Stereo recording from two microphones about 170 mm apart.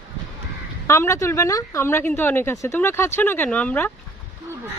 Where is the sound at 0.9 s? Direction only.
15° left (ahead or behind).